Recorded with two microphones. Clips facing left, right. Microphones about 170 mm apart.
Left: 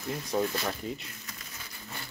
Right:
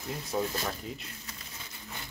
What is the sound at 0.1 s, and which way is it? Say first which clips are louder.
Speech: left 2 dB; 5° right (ahead or behind).